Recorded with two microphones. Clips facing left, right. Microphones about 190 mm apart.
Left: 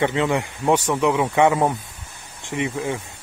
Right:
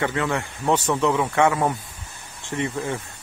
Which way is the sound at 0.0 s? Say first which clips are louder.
Left 4 dB; 20° left (ahead or behind).